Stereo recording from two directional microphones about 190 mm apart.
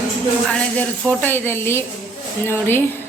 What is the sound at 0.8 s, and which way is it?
A woman's voice, 10° left (ahead or behind).